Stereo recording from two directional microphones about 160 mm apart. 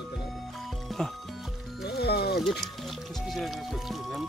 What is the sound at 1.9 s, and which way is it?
Music, 90° left.